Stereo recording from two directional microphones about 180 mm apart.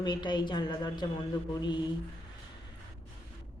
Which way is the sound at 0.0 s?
25° left (ahead or behind).